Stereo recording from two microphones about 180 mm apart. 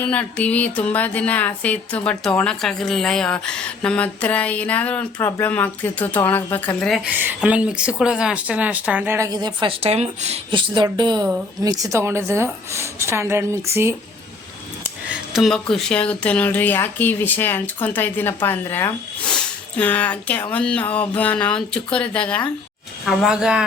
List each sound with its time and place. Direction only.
0.0 s speech: 10° left (ahead or behind)
7.1 s speech: 10° right (ahead or behind)
15.3 s speech: centre (ahead or behind)
23.0 s speech: 5° right (ahead or behind)